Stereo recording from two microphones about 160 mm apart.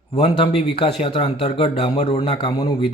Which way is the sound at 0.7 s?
35° left (ahead or behind).